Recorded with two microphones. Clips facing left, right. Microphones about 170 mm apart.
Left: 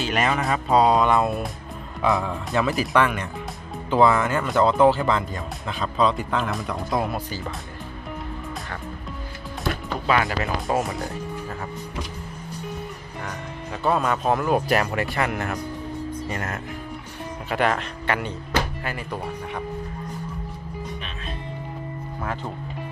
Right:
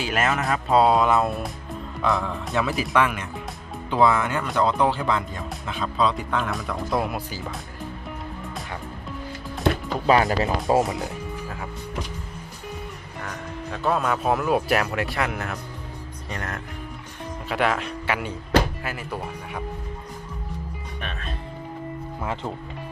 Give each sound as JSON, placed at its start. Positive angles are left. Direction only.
{"t": 0.0, "sound": "speech", "side_deg": 0}
{"t": 10.1, "sound": "speech", "side_deg": -35}
{"t": 10.8, "sound": "speech", "side_deg": 0}
{"t": 13.2, "sound": "speech", "side_deg": 0}